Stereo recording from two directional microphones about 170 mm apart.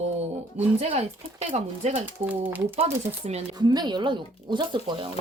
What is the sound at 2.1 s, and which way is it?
Speech, 10° right (ahead or behind).